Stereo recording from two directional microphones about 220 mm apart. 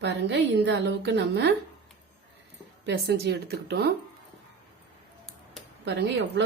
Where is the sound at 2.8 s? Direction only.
50° right (ahead or behind).